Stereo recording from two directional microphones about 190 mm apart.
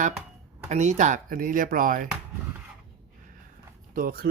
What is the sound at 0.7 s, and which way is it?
Speech, 40° right (ahead or behind).